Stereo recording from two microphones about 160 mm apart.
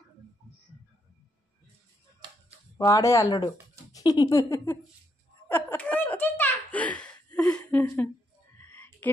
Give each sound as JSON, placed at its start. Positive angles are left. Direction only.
{"t": 2.8, "sound": "speech", "side_deg": 20}
{"t": 5.5, "sound": "giggle", "side_deg": 10}
{"t": 8.5, "sound": "a sound", "side_deg": 10}